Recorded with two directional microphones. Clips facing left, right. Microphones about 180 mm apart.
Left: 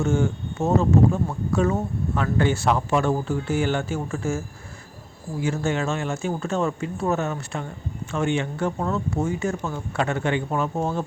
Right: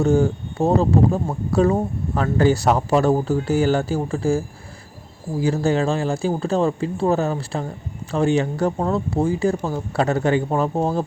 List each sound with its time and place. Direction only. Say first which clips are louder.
0.0 s speech: right 5 dB; 35° right (ahead or behind)